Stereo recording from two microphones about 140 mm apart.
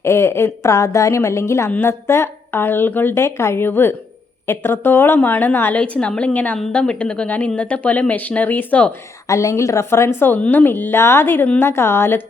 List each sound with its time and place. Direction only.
0.0 s a woman's voice: 20° left (ahead or behind)
9.2 s a woman's voice: 20° left (ahead or behind)